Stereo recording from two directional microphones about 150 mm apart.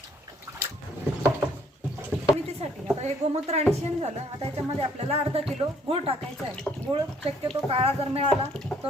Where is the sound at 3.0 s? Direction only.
45° right (ahead or behind).